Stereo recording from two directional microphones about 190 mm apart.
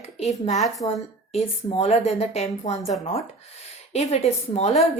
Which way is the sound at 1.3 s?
35° left (ahead or behind).